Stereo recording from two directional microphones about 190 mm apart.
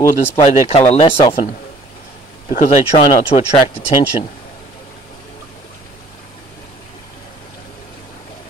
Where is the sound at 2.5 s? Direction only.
40° left (ahead or behind).